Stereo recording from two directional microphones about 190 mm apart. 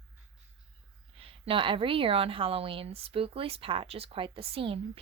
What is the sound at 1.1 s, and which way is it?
A woman's voice, 30° right (ahead or behind).